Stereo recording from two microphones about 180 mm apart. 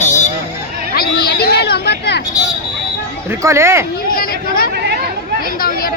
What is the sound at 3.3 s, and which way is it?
Speech, 15° right (ahead or behind).